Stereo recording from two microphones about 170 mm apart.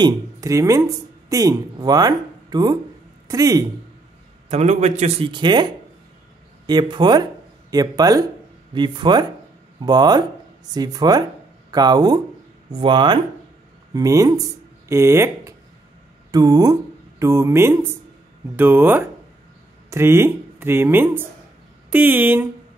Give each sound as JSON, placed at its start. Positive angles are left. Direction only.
{"t": 0.0, "sound": "speech", "side_deg": -20}
{"t": 4.5, "sound": "a man's voice", "side_deg": -40}
{"t": 5.3, "sound": "speech", "side_deg": -25}